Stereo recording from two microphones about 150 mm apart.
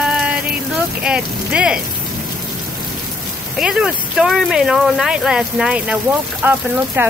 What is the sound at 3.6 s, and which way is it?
Speech, 5° right (ahead or behind).